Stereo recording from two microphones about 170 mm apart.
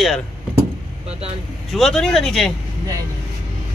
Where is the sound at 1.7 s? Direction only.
Centre (ahead or behind).